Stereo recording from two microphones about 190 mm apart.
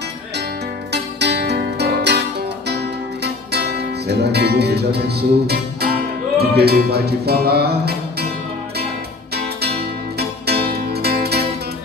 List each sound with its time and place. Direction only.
0.9 s music: 65° right (ahead or behind)
3.3 s music: 60° right (ahead or behind)
10.1 s music: 55° right (ahead or behind)